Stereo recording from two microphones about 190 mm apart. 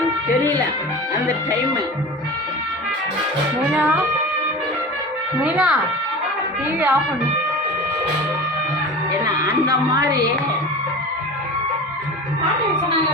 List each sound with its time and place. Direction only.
3.7 s speech: 10° right (ahead or behind)
5.4 s speech: 5° right (ahead or behind)
6.7 s speech: 10° right (ahead or behind)
9.9 s a woman's voice: 20° right (ahead or behind)